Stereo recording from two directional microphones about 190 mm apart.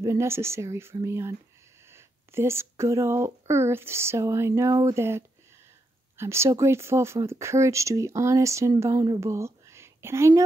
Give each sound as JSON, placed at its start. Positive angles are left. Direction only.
{"t": 0.0, "sound": "speech", "side_deg": -15}